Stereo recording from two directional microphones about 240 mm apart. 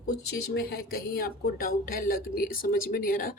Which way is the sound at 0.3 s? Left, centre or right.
Left.